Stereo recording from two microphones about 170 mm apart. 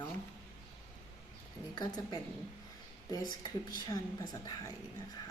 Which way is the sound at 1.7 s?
25° left (ahead or behind).